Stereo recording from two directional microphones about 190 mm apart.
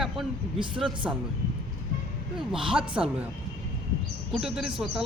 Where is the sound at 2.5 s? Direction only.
5° right (ahead or behind).